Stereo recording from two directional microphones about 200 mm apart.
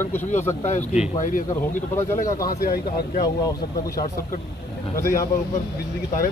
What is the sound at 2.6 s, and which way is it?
Speech, 50° left (ahead or behind).